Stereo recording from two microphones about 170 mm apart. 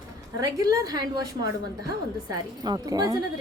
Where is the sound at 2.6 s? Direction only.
25° right (ahead or behind).